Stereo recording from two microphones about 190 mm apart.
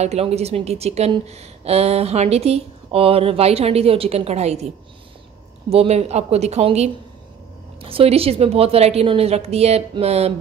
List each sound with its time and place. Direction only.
0.0 s a woman's voice: 35° right (ahead or behind)
5.7 s a woman's voice: 35° right (ahead or behind)